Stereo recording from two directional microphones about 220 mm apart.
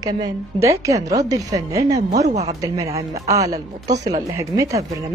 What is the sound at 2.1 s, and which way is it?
Speech, 30° right (ahead or behind).